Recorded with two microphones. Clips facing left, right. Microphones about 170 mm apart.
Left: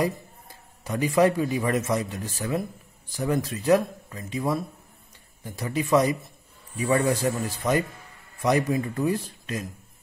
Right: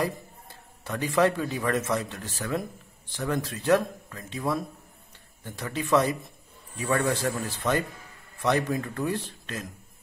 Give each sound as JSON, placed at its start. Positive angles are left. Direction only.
{"t": 0.8, "sound": "a man's voice", "side_deg": 10}